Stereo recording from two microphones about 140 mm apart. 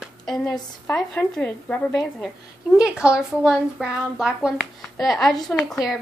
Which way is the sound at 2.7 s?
5° right (ahead or behind).